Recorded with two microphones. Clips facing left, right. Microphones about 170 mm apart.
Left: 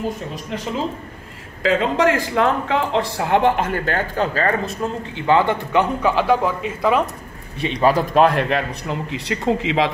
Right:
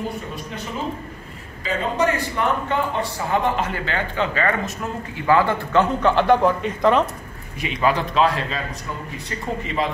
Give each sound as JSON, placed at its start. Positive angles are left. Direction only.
{"t": 1.6, "sound": "a woman's voice", "side_deg": 90}
{"t": 6.0, "sound": "speech", "side_deg": 5}
{"t": 7.6, "sound": "a woman's voice", "side_deg": 35}